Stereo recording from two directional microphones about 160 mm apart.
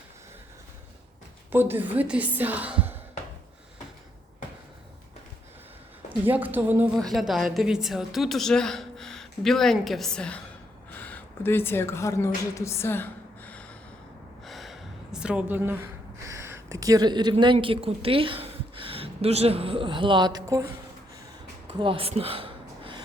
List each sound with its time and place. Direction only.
1.5 s speech: 15° right (ahead or behind)
6.1 s speech: 10° right (ahead or behind)
6.9 s a woman's voice: centre (ahead or behind)
14.4 s gasp: centre (ahead or behind)
16.2 s a sound: 15° right (ahead or behind)
17.4 s a woman's voice: 30° right (ahead or behind)
21.8 s a sound: 35° right (ahead or behind)